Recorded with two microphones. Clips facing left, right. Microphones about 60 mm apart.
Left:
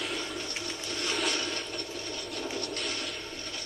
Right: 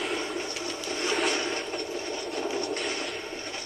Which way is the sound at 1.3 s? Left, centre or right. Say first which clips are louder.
Right 4 dB; right.